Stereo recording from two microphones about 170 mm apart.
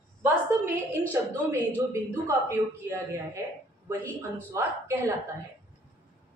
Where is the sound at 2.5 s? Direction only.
15° right (ahead or behind).